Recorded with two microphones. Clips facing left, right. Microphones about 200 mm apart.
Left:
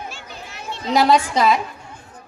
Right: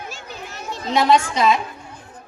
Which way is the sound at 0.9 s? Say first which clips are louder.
Left 1 dB; 35° left (ahead or behind).